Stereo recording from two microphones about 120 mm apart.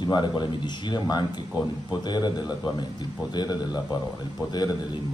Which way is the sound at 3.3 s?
35° left (ahead or behind).